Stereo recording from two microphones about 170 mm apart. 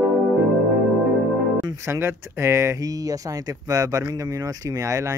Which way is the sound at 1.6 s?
20° right (ahead or behind).